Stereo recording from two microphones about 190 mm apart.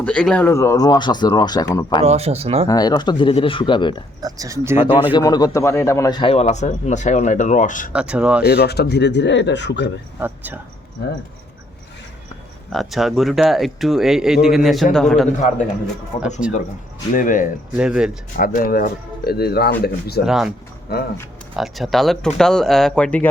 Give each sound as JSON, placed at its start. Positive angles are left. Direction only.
{"t": 0.0, "sound": "speech", "side_deg": 5}
{"t": 2.0, "sound": "speech", "side_deg": -35}
{"t": 2.6, "sound": "speech", "side_deg": 20}
{"t": 4.2, "sound": "speech", "side_deg": -20}
{"t": 5.1, "sound": "a man's voice", "side_deg": 20}
{"t": 7.9, "sound": "speech", "side_deg": -5}
{"t": 8.4, "sound": "speech", "side_deg": 60}
{"t": 10.2, "sound": "speech", "side_deg": -10}
{"t": 12.7, "sound": "speech", "side_deg": 0}
{"t": 15.4, "sound": "a man's voice", "side_deg": 40}
{"t": 17.7, "sound": "speech", "side_deg": -5}
{"t": 18.3, "sound": "speech", "side_deg": 50}
{"t": 20.2, "sound": "speech", "side_deg": 0}
{"t": 21.5, "sound": "speech", "side_deg": 0}